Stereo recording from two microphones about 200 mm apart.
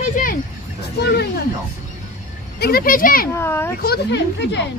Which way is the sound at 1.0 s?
55° left (ahead or behind).